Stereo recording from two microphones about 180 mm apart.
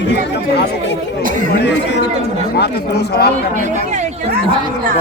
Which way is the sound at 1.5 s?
70° left (ahead or behind).